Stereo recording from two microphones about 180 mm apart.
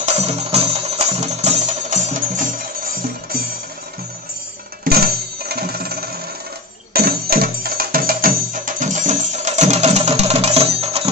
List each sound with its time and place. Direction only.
0.0 s music: 40° right (ahead or behind)
4.8 s music: 60° right (ahead or behind); by 11.1 s 35° right (ahead or behind)